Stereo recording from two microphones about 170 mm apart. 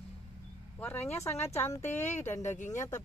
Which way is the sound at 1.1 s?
15° left (ahead or behind).